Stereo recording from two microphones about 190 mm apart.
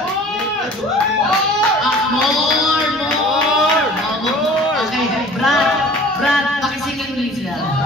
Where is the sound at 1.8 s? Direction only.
Centre (ahead or behind).